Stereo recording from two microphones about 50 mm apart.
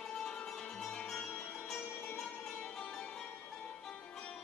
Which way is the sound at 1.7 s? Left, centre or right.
Left.